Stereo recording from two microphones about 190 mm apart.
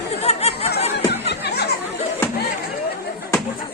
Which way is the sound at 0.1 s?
35° left (ahead or behind).